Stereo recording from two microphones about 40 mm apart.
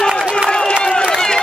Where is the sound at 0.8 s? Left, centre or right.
Left.